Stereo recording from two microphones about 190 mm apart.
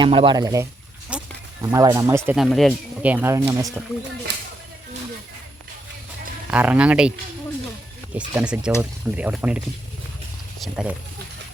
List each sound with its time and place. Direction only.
0.0 s speech: 25° right (ahead or behind)
1.1 s a sound: 5° right (ahead or behind)
1.6 s speech: 20° right (ahead or behind)
2.3 s speech: centre (ahead or behind); by 3.7 s 15° right (ahead or behind)
6.5 s speech: 5° right (ahead or behind)
8.1 s speech: 5° right (ahead or behind)